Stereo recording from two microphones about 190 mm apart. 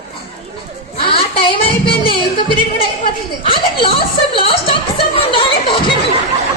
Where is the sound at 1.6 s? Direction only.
25° left (ahead or behind).